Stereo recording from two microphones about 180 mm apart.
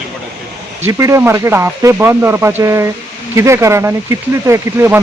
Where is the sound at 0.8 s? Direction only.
15° right (ahead or behind).